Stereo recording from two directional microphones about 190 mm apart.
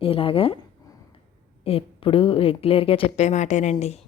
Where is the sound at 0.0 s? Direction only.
30° left (ahead or behind).